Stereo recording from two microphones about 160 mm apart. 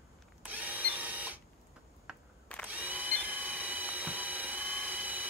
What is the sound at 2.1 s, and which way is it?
Camera, 5° right (ahead or behind).